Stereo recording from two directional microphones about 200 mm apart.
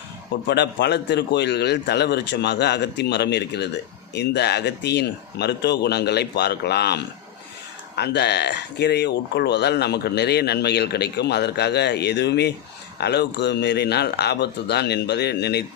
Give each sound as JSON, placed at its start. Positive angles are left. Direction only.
{"t": 0.4, "sound": "speech", "side_deg": 55}